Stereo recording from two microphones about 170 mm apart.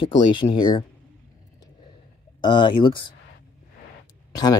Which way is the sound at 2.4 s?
25° left (ahead or behind).